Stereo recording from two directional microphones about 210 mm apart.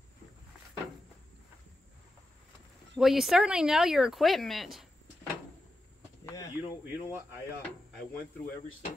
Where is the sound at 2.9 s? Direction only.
Centre (ahead or behind).